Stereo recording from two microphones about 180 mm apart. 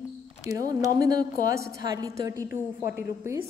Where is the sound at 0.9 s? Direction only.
20° right (ahead or behind).